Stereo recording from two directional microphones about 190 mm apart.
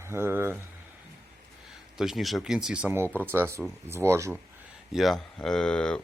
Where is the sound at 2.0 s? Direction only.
Centre (ahead or behind).